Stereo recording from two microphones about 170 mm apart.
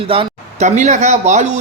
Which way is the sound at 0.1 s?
40° right (ahead or behind).